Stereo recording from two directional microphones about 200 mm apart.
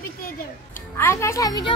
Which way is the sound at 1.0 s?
15° left (ahead or behind).